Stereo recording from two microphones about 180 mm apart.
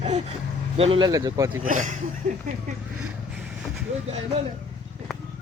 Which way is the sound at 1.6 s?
45° right (ahead or behind).